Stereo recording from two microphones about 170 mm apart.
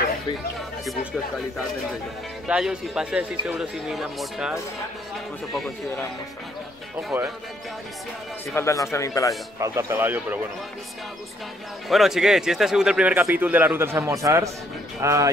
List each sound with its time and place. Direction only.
2.4 s speech: 5° right (ahead or behind)
8.5 s speech: 15° left (ahead or behind)
9.6 s speech: 15° right (ahead or behind)
11.9 s speech: centre (ahead or behind); by 15.3 s 15° right (ahead or behind)